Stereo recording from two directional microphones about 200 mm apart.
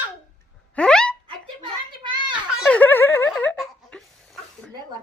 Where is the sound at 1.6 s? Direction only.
25° right (ahead or behind).